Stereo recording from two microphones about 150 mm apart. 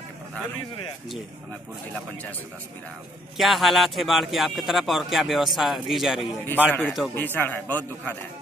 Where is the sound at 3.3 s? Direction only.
Centre (ahead or behind).